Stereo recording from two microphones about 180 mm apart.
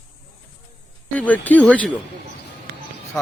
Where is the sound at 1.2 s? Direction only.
10° left (ahead or behind).